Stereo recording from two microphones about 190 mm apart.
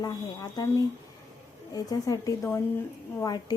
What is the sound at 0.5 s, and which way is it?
A woman's voice, 20° left (ahead or behind).